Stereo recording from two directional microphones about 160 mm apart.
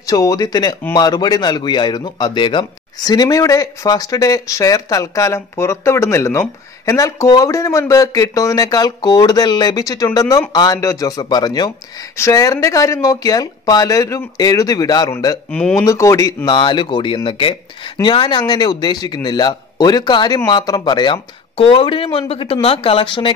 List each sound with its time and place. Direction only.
0.0 s speech: 20° left (ahead or behind)